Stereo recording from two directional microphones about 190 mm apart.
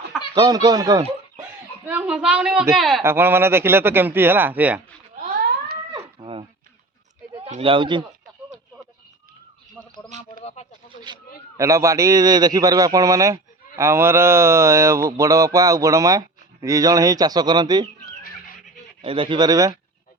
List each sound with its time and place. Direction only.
0.3 s speech: 20° right (ahead or behind)
1.9 s speech: 5° right (ahead or behind)
3.0 s speech: 10° right (ahead or behind)
5.2 s a sound: 50° right (ahead or behind)
5.9 s a sound: 25° right (ahead or behind)
7.4 s speech: 30° right (ahead or behind)
9.8 s a sound: 10° left (ahead or behind)
10.4 s snake: 35° left (ahead or behind)
11.1 s speech: 25° right (ahead or behind)
18.2 s music: 50° left (ahead or behind)
19.0 s speech: 25° right (ahead or behind)